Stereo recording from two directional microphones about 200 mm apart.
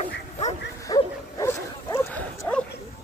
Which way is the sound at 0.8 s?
15° left (ahead or behind).